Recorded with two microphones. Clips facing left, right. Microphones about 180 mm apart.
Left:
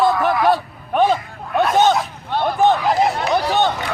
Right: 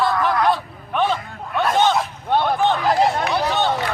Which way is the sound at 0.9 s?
40° left (ahead or behind).